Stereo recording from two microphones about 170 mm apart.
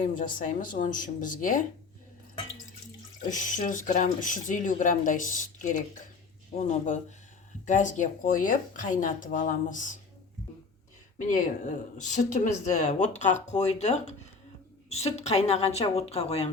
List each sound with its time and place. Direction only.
0.0 s speech: 50° left (ahead or behind)
3.2 s speech: 50° left (ahead or behind)
11.3 s a woman's voice: 45° left (ahead or behind)